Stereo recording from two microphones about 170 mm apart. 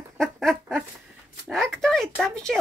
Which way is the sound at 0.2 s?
Centre (ahead or behind).